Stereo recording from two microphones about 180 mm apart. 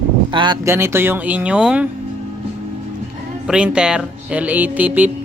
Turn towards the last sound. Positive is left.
turn(degrees=-10)  # may be behind; listen again after turning